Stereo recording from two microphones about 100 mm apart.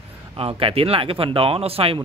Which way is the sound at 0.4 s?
70° right (ahead or behind).